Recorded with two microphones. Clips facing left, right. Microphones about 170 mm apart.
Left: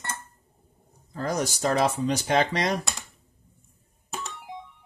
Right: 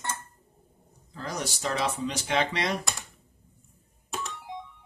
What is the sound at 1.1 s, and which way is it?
Speech, 50° left (ahead or behind).